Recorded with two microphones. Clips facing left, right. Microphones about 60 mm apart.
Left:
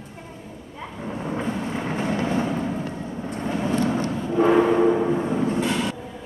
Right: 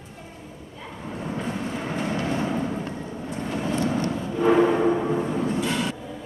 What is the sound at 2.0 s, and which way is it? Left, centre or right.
Vehicle, left.